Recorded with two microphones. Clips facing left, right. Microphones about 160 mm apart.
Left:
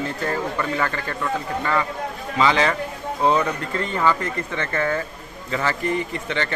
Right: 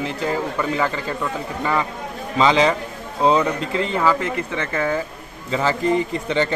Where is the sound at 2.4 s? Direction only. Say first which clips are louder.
Right 3 dB; 20° right (ahead or behind).